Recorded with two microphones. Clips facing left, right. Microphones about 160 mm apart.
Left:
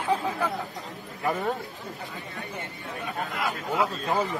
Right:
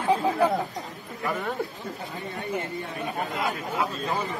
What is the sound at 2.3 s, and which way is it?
Speech, 20° right (ahead or behind).